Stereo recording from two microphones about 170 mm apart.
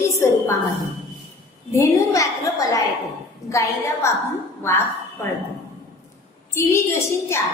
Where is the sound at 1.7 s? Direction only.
20° left (ahead or behind).